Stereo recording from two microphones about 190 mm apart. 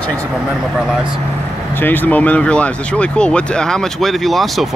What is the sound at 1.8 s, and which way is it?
Speech, 10° left (ahead or behind).